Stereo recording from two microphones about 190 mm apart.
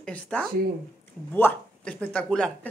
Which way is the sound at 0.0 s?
5° left (ahead or behind).